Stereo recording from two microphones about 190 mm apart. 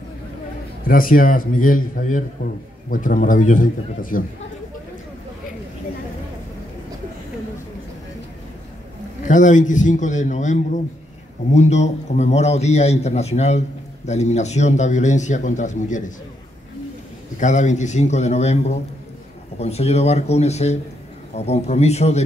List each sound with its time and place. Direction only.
0.8 s a man's voice: 45° left (ahead or behind)
9.2 s a man's voice: 40° left (ahead or behind)
17.4 s a man's voice: 40° left (ahead or behind)